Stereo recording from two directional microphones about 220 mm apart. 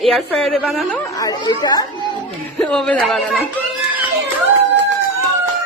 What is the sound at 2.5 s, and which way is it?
Speech, 5° left (ahead or behind).